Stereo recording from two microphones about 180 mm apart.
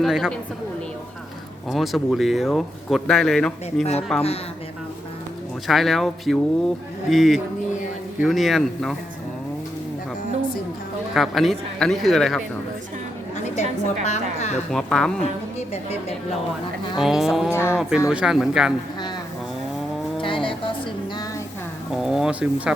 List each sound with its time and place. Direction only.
0.0 s speech: centre (ahead or behind)
1.7 s speech: centre (ahead or behind)
5.6 s speech: centre (ahead or behind)
11.1 s speech: centre (ahead or behind)
13.6 s a woman's voice: 40° left (ahead or behind)
14.7 s speech: 5° left (ahead or behind)
15.7 s a woman's voice: 35° left (ahead or behind)
17.0 s speech: centre (ahead or behind)
17.5 s speech: 15° left (ahead or behind)
17.7 s speech: 5° right (ahead or behind)
20.1 s a sound: 30° left (ahead or behind)
22.0 s speech: 5° right (ahead or behind)